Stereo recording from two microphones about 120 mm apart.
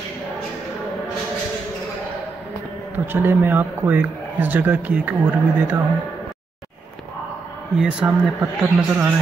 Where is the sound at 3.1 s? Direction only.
20° right (ahead or behind).